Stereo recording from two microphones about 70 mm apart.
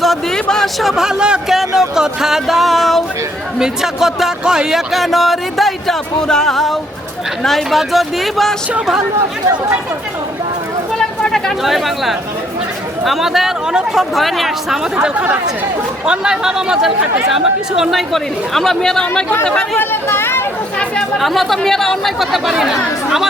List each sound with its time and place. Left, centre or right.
0.0 s speech: centre
10.9 s a sound: centre
11.6 s speech: centre
19.8 s speech: left
21.2 s speech: centre